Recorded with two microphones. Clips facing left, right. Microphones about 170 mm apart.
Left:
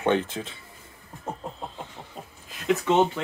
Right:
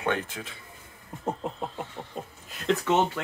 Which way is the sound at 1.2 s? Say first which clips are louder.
Right 4 dB; 15° right (ahead or behind).